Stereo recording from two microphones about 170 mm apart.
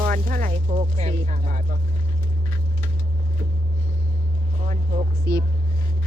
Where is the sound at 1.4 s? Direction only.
55° right (ahead or behind).